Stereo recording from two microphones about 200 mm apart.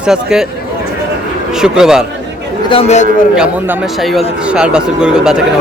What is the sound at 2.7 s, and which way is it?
Speech, 30° left (ahead or behind).